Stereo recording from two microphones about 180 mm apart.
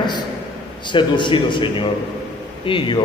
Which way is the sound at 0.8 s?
25° left (ahead or behind).